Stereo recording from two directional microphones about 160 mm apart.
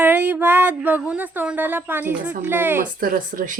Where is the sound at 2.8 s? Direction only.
60° right (ahead or behind).